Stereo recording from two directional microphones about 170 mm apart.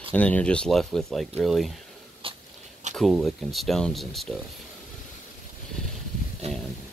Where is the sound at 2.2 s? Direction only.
30° right (ahead or behind).